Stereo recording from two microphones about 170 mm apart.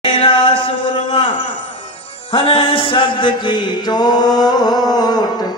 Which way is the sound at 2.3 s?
35° left (ahead or behind).